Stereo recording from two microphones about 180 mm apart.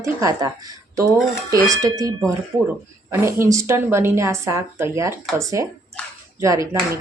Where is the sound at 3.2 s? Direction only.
15° right (ahead or behind).